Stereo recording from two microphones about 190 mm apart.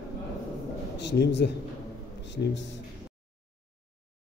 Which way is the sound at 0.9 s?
65° left (ahead or behind).